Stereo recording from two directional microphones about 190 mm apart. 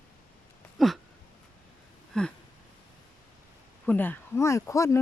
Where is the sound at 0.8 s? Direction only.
Centre (ahead or behind).